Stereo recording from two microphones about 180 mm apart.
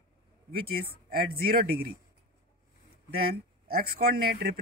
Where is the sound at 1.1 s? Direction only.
55° right (ahead or behind).